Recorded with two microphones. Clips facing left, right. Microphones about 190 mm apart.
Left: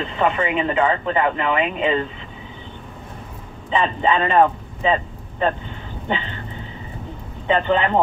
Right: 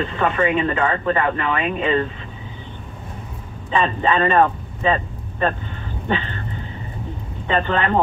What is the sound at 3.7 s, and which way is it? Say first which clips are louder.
Speech: even; 20° left (ahead or behind).